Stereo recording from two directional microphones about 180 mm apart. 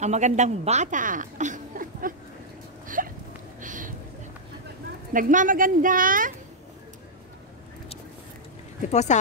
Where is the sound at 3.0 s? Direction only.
50° right (ahead or behind).